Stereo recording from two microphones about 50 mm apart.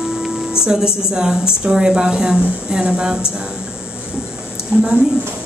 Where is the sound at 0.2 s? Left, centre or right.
Centre.